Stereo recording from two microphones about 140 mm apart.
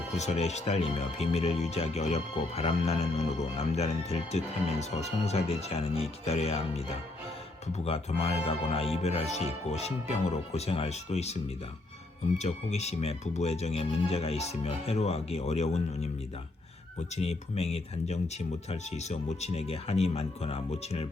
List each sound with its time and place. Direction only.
0.2 s speech: 50° left (ahead or behind)
12.4 s speech: 50° left (ahead or behind)